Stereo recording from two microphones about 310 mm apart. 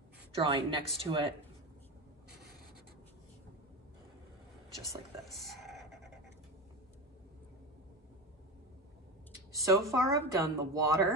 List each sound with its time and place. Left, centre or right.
0.4 s a woman's voice: centre
5.2 s a sound: centre
9.5 s a woman's voice: centre